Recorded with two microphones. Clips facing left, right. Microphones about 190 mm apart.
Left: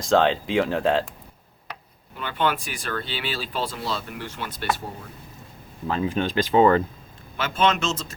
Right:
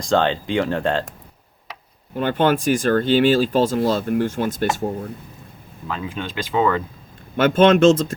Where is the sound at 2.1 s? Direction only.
45° right (ahead or behind).